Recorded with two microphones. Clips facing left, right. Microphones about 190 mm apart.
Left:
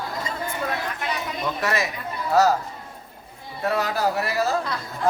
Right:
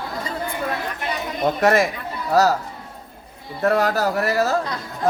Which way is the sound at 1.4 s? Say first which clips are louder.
Right 9 dB; 50° right (ahead or behind).